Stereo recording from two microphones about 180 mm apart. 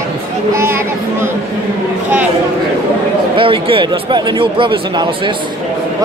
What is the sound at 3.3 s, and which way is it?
Speech, 30° right (ahead or behind).